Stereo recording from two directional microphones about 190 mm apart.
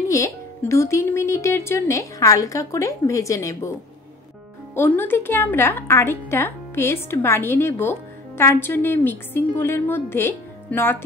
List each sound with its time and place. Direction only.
0.1 s a woman's voice: 15° left (ahead or behind)
4.7 s a woman's voice: 10° left (ahead or behind)